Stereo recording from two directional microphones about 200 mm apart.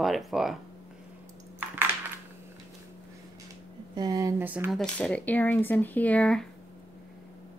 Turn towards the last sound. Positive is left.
turn(degrees=5)  # may be behind; listen again after turning